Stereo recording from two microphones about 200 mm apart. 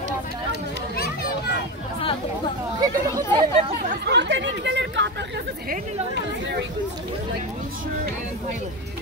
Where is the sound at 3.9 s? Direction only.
55° right (ahead or behind).